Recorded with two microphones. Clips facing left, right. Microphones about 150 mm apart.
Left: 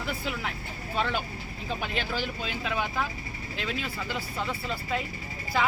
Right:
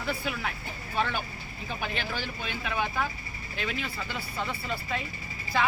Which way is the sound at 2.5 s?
20° left (ahead or behind).